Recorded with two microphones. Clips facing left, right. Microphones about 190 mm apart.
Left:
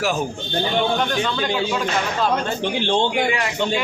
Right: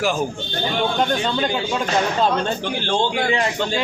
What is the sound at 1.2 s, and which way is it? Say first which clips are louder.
Speech: right 1 dB; 30° right (ahead or behind).